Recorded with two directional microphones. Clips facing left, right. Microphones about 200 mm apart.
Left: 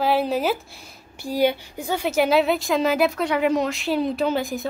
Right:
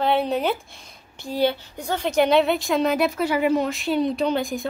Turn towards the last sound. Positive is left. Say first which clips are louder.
# even
turn(degrees=0)  # may be behind; listen again after turning